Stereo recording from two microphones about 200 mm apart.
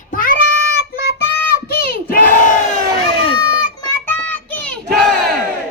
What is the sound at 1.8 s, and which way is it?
Battle cry, 45° left (ahead or behind).